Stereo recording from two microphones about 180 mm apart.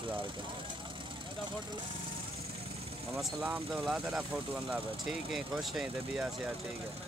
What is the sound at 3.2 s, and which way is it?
Speech, 5° right (ahead or behind).